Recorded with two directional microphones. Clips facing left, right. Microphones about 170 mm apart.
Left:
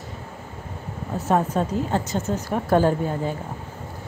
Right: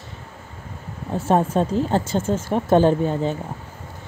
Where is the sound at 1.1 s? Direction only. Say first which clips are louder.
Right 3 dB; 25° right (ahead or behind).